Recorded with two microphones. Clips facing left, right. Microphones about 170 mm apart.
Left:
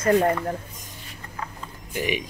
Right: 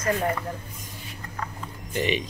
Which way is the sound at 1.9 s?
10° left (ahead or behind).